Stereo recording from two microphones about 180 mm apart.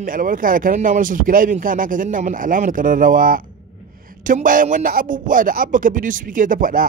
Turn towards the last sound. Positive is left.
turn(degrees=-50)  # may be behind; listen again after turning